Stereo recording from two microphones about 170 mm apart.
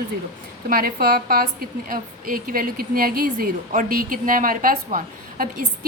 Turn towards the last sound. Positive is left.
turn(degrees=-55)  # may be behind; listen again after turning